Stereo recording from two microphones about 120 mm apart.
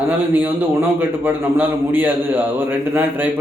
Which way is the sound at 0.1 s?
15° right (ahead or behind).